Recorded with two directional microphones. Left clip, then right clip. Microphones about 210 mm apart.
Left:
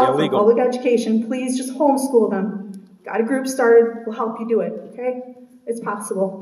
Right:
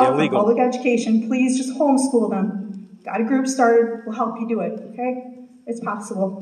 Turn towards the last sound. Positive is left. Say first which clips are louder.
# left 2 dB
turn(degrees=35)  # may be behind; listen again after turning